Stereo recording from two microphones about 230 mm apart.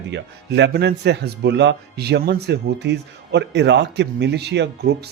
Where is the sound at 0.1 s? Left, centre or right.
Right.